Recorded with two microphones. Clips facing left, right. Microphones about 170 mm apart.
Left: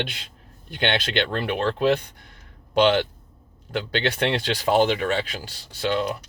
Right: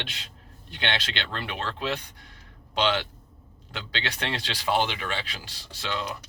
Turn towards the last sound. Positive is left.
turn(degrees=50)  # may be behind; listen again after turning